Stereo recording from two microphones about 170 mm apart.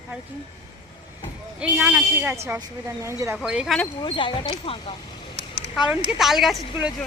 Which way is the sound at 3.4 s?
5° right (ahead or behind).